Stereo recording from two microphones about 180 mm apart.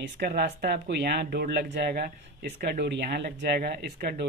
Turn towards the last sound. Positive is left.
turn(degrees=-60)  # may be behind; listen again after turning